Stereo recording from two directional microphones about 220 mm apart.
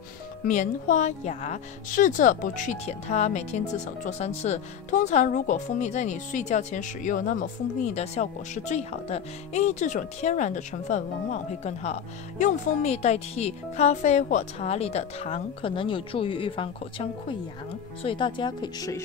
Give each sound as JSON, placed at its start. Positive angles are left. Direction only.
{"t": 0.5, "sound": "a woman's voice", "side_deg": 35}